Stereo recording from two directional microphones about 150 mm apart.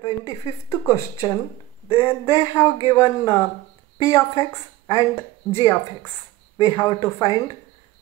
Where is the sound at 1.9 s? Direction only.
40° left (ahead or behind).